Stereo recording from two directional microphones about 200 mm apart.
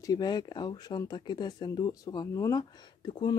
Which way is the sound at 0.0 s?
20° left (ahead or behind).